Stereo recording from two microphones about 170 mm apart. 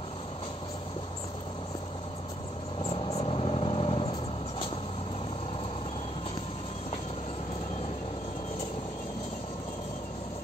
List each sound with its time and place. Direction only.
2.8 s vehicle: 35° left (ahead or behind)